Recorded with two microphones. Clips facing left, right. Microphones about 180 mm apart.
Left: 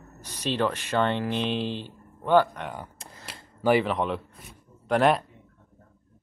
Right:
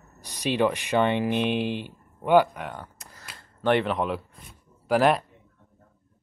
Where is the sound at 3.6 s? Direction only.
Centre (ahead or behind).